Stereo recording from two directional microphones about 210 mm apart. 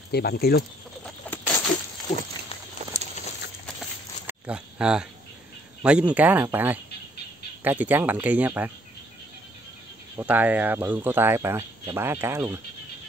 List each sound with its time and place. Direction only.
0.1 s speech: 50° left (ahead or behind)
1.0 s patter: 10° left (ahead or behind)
4.3 s pig: 5° right (ahead or behind)
5.8 s speech: 5° right (ahead or behind)
10.1 s speech: 10° right (ahead or behind)